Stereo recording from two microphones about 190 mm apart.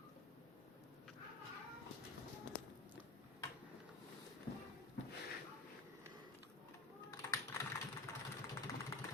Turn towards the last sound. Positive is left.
turn(degrees=20)  # may be behind; listen again after turning